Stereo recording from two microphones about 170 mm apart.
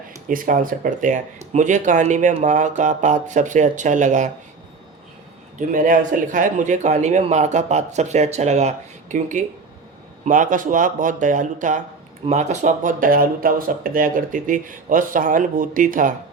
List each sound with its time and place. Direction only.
0.3 s speech: 55° right (ahead or behind)
5.5 s speech: 50° right (ahead or behind)